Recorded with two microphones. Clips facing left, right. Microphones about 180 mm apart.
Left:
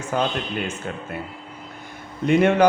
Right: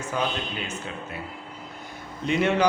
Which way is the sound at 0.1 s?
55° left (ahead or behind).